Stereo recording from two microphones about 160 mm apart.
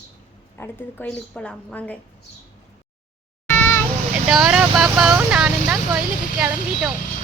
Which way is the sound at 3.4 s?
15° left (ahead or behind).